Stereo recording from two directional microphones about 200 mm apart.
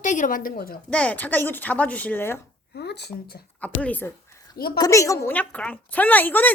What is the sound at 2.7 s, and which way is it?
Speech, 55° left (ahead or behind).